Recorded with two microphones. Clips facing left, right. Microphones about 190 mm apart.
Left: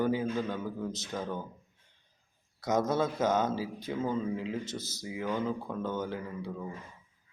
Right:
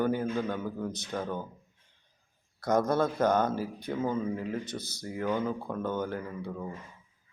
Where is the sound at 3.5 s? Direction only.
55° right (ahead or behind).